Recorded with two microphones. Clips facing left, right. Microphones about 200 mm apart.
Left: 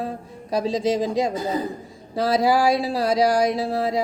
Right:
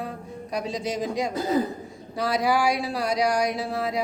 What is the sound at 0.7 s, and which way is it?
Speech, 90° left.